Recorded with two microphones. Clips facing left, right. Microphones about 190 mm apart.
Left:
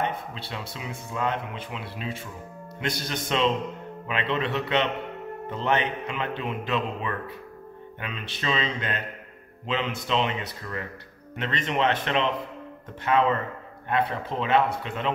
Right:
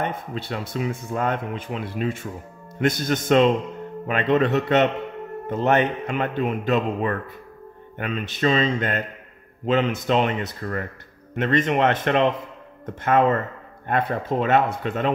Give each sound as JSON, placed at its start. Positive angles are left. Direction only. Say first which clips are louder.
{"t": 0.0, "sound": "speech", "louder": "right 3 dB", "side_deg": -50}